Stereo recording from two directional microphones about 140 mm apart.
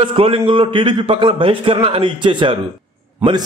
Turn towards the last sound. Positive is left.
turn(degrees=-15)  # may be behind; listen again after turning